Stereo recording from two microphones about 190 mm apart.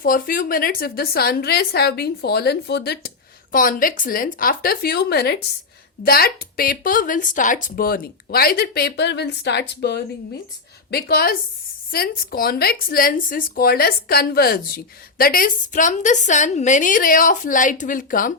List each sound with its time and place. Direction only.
0.0 s a woman's voice: 50° left (ahead or behind)